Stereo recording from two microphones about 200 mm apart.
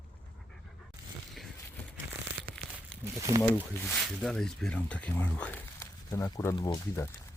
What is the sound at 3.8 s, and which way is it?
Speech, centre (ahead or behind).